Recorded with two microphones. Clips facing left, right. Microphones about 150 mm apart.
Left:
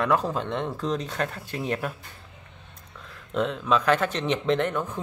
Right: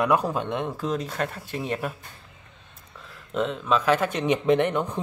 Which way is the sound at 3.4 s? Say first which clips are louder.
Even; centre (ahead or behind).